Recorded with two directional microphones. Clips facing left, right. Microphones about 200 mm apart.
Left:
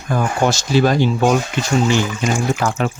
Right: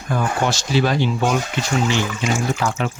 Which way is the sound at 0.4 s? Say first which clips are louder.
Left 6 dB; 45° left (ahead or behind).